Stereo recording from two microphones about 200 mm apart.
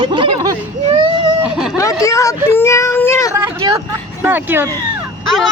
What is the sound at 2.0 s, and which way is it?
A child's voice, 15° left (ahead or behind).